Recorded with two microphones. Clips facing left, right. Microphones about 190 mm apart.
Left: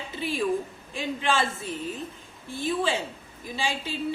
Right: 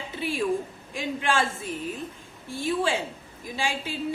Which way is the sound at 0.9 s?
10° right (ahead or behind).